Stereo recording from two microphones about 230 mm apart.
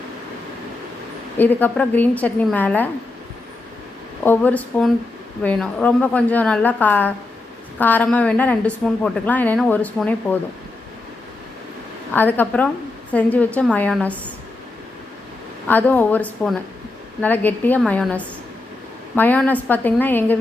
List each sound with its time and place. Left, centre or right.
1.4 s a woman's voice: centre
4.2 s a woman's voice: centre
12.1 s a woman's voice: centre
15.6 s a woman's voice: centre